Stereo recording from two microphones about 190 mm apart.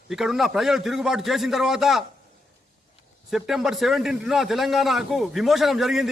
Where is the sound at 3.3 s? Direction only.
Centre (ahead or behind).